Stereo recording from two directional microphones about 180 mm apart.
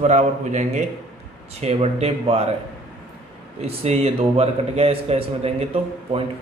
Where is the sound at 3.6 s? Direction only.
35° right (ahead or behind).